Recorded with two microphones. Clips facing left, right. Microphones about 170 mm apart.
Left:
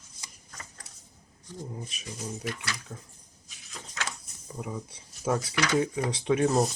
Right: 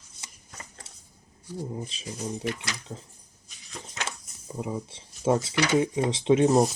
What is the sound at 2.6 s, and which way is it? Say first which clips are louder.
Speech: right 2 dB; 25° right (ahead or behind).